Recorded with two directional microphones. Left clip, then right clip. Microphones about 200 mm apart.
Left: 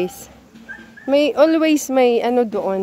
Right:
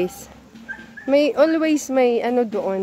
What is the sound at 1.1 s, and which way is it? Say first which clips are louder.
Speech: left 2 dB; 25° left (ahead or behind).